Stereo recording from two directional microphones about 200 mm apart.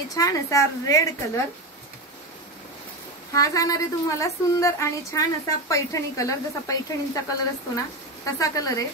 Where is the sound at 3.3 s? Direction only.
15° left (ahead or behind).